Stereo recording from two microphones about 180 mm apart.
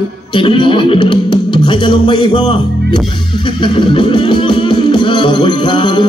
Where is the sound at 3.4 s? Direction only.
25° left (ahead or behind).